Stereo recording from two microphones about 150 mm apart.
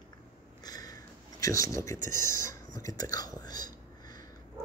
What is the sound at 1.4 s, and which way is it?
Speech, 20° left (ahead or behind).